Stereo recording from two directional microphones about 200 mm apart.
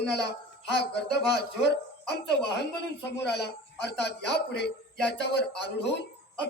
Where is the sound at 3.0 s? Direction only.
55° left (ahead or behind).